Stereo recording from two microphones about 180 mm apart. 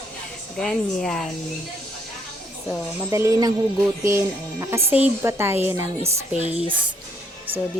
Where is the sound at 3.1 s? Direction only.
15° right (ahead or behind).